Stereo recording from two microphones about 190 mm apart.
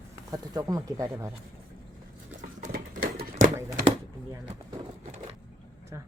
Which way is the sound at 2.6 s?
45° right (ahead or behind).